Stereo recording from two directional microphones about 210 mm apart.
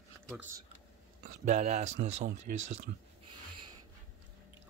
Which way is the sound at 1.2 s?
35° right (ahead or behind).